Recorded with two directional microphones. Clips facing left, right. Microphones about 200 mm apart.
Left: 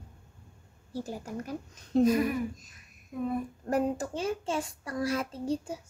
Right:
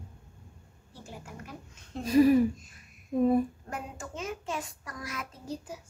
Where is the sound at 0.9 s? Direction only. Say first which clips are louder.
Left 10 dB; 40° left (ahead or behind).